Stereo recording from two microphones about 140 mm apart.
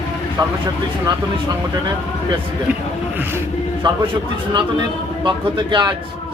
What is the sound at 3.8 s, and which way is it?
Speech, 35° right (ahead or behind).